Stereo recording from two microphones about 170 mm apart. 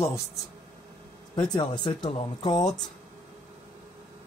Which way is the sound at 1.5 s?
25° left (ahead or behind).